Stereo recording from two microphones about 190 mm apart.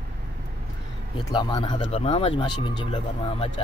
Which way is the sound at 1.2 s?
20° left (ahead or behind).